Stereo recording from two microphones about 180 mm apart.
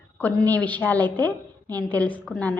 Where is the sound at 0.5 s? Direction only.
10° left (ahead or behind).